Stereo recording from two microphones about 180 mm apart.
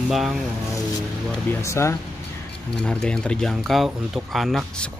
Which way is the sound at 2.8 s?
5° left (ahead or behind).